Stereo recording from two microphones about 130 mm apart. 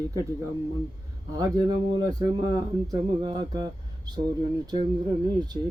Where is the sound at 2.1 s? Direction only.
30° right (ahead or behind).